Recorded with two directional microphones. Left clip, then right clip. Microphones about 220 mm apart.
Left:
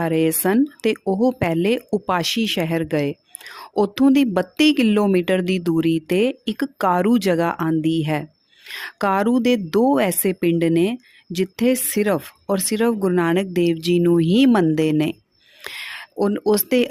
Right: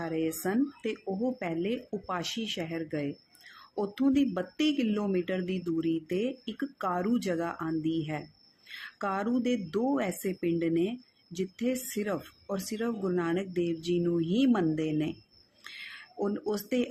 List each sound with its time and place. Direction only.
0.0 s speech: 50° left (ahead or behind)